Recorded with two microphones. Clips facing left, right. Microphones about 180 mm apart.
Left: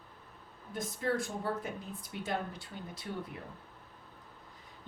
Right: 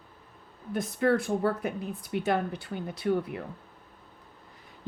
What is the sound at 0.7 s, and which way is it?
A woman's voice, 65° right (ahead or behind).